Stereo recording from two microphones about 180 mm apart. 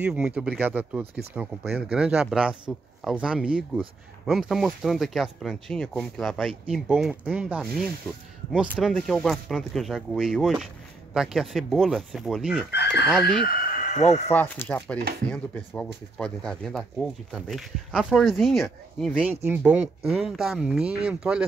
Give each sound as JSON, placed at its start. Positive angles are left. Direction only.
{"t": 0.0, "sound": "speech", "side_deg": -5}
{"t": 12.7, "sound": "chicken", "side_deg": 70}
{"t": 13.9, "sound": "speech", "side_deg": 40}
{"t": 14.3, "sound": "speech", "side_deg": 10}